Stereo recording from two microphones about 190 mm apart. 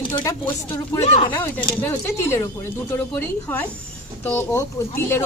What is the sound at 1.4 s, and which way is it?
Speech, 10° left (ahead or behind).